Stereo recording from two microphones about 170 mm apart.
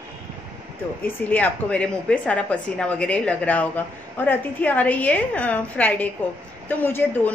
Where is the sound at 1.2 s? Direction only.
10° left (ahead or behind).